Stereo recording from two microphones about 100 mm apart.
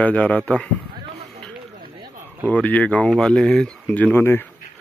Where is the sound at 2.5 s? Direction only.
15° left (ahead or behind).